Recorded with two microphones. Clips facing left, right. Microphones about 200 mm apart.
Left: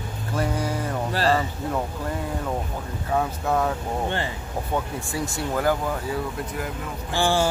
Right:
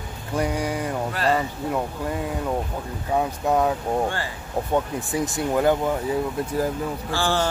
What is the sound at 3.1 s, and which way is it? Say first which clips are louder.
Speech: right 2 dB; 15° right (ahead or behind).